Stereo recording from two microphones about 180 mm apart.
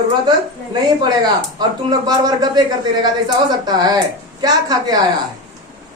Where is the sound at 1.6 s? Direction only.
20° right (ahead or behind).